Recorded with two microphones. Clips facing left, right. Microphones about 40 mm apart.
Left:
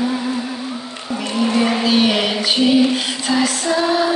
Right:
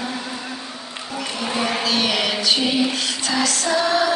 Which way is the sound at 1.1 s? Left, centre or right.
Centre.